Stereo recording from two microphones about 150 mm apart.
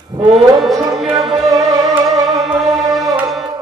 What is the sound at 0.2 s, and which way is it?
Music, 35° right (ahead or behind).